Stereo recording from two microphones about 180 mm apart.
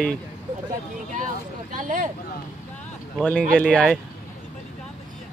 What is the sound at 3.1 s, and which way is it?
Speech, 5° left (ahead or behind).